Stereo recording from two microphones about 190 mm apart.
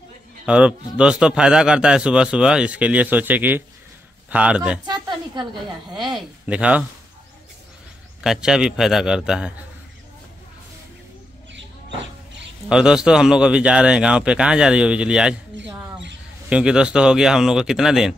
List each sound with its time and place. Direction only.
0.5 s a man's voice: 5° right (ahead or behind)
4.9 s a sound: 25° right (ahead or behind)
6.1 s speech: 5° right (ahead or behind)
8.2 s a man's voice: 5° right (ahead or behind)
12.6 s a man's voice: 5° right (ahead or behind)
16.4 s a man's voice: 5° right (ahead or behind)